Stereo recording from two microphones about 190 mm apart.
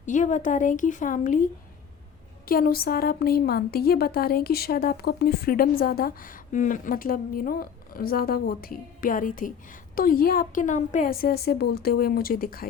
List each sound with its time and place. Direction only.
0.0 s speech: 40° left (ahead or behind)
2.5 s speech: 50° left (ahead or behind)